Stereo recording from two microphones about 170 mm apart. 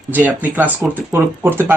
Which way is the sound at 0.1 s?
10° right (ahead or behind).